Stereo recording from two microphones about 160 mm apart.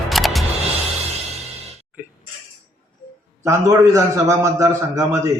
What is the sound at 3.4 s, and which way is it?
A man's voice, 20° right (ahead or behind).